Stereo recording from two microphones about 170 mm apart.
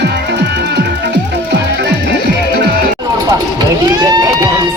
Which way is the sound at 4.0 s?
20° right (ahead or behind).